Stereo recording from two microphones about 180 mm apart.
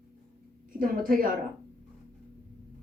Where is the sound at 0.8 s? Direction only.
50° right (ahead or behind).